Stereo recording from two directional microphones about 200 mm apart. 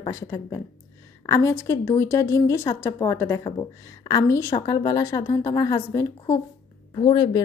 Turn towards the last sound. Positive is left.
turn(degrees=25)  # may be behind; listen again after turning